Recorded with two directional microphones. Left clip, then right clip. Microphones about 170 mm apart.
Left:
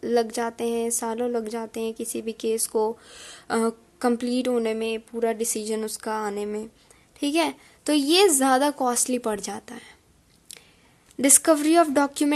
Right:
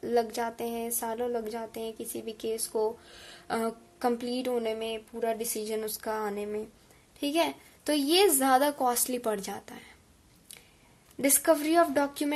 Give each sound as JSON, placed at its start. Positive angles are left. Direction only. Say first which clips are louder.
{"t": 0.0, "sound": "speech", "louder": "left 5 dB", "side_deg": 30}
{"t": 11.2, "sound": "speech", "louder": "left 5 dB", "side_deg": 40}